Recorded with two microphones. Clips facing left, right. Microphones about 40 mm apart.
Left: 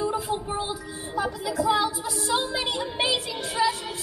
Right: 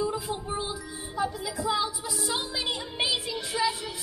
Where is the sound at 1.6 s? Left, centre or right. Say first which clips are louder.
Left 5 dB; left.